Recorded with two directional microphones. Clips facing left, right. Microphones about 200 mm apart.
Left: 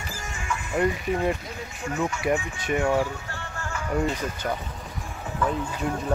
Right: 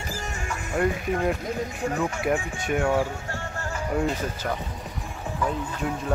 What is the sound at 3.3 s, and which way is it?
Music, 40° right (ahead or behind).